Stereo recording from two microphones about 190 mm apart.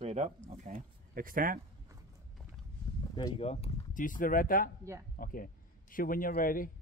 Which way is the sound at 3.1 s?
25° left (ahead or behind).